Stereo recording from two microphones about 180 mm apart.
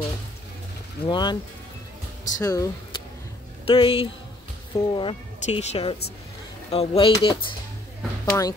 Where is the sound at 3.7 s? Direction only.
30° left (ahead or behind).